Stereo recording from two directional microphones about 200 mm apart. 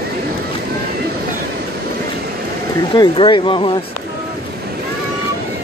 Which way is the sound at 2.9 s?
25° left (ahead or behind).